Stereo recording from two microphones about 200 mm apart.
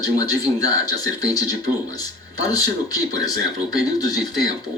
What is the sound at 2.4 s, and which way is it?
Speech, 20° left (ahead or behind).